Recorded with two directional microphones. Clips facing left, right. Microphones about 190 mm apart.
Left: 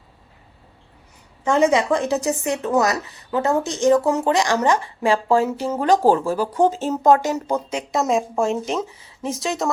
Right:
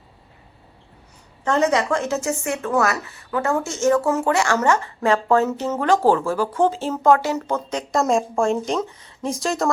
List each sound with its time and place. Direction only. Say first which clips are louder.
1.5 s speech: left 2 dB; 15° left (ahead or behind)